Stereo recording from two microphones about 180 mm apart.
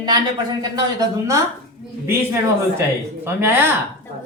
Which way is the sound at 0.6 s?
20° right (ahead or behind).